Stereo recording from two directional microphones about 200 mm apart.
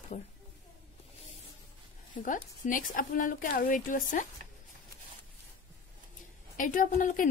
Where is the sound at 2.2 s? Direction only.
45° left (ahead or behind).